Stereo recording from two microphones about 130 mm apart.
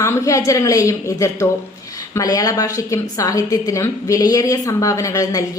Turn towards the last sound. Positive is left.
turn(degrees=25)  # may be behind; listen again after turning